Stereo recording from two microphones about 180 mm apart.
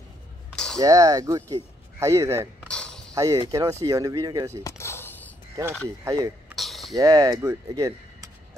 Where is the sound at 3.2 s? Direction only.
20° right (ahead or behind).